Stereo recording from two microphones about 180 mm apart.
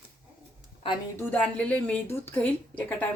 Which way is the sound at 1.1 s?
10° left (ahead or behind).